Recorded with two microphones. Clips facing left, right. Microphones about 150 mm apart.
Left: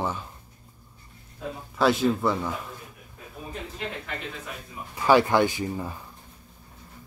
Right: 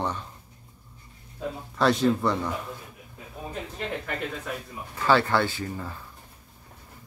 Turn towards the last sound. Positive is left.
turn(degrees=15)  # may be behind; listen again after turning